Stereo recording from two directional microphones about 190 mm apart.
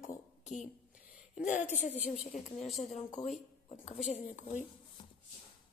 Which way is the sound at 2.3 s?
40° left (ahead or behind).